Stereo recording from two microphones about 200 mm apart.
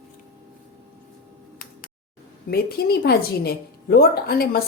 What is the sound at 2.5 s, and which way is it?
A woman's voice, 50° left (ahead or behind).